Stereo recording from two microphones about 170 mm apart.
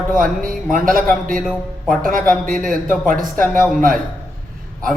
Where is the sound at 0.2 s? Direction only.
55° right (ahead or behind).